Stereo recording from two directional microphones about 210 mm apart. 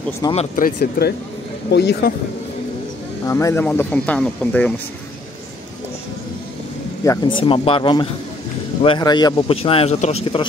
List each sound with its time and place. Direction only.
0.2 s speech: 25° left (ahead or behind)
0.6 s speech: 45° left (ahead or behind)
3.3 s speech: 15° left (ahead or behind)
7.1 s speech: 25° left (ahead or behind)